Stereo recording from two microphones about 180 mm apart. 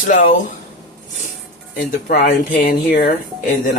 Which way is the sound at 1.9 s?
45° left (ahead or behind).